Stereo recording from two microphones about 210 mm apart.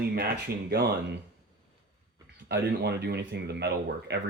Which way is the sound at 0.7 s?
50° right (ahead or behind).